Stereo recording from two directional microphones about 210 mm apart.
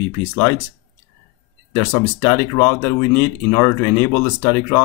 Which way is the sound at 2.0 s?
15° left (ahead or behind).